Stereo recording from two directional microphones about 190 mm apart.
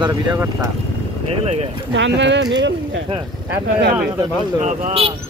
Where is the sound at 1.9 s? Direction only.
70° right (ahead or behind).